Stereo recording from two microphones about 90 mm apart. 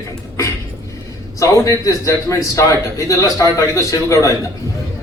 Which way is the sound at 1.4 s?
35° left (ahead or behind).